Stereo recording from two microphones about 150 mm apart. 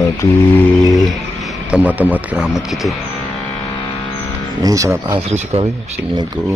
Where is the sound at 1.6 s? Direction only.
10° right (ahead or behind).